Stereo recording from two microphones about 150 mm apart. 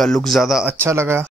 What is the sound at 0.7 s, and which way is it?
Speech, 15° right (ahead or behind).